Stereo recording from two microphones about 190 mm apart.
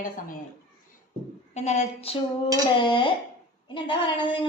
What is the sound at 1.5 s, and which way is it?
A woman's voice, 35° left (ahead or behind).